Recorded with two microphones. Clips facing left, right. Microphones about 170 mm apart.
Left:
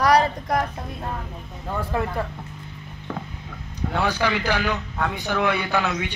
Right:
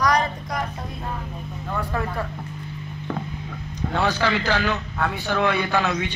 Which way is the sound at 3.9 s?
10° left (ahead or behind).